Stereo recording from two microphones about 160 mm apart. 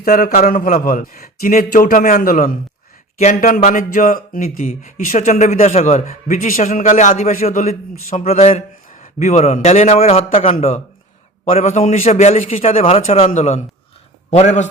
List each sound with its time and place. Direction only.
0.0 s speech: 65° left (ahead or behind)
1.4 s speech: 50° left (ahead or behind)
4.6 s speech: 40° left (ahead or behind)
4.9 s a man's voice: 55° left (ahead or behind)